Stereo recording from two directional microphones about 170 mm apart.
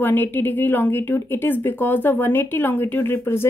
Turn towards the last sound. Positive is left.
turn(degrees=15)  # may be behind; listen again after turning